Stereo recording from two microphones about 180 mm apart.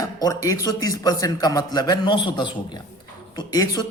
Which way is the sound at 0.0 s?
20° left (ahead or behind).